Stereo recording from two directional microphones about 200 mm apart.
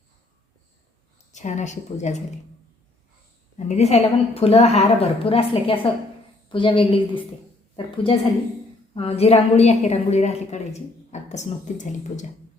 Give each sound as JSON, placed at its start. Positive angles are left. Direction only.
{"t": 1.3, "sound": "a woman's voice", "side_deg": 35}
{"t": 3.7, "sound": "a woman's voice", "side_deg": 35}